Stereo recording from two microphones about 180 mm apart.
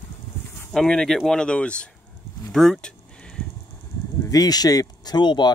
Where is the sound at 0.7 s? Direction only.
5° left (ahead or behind).